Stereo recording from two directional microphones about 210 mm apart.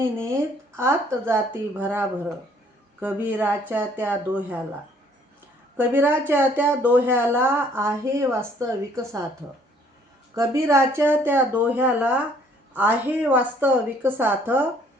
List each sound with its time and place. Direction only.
0.8 s speech: 10° right (ahead or behind)
5.7 s speech: 10° right (ahead or behind)
10.3 s speech: 15° right (ahead or behind)